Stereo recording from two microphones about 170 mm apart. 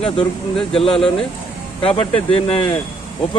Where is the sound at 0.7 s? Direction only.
35° left (ahead or behind).